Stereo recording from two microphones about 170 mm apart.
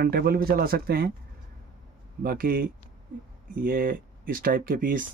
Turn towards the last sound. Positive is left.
turn(degrees=-55)  # may be behind; listen again after turning